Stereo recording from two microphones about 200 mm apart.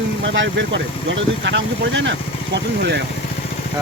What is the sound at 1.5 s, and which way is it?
Speech, 65° right (ahead or behind).